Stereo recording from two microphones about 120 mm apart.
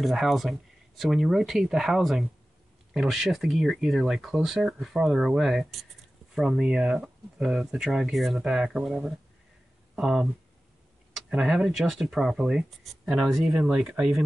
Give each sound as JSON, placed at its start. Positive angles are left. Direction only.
{"t": 0.0, "sound": "speech", "side_deg": 0}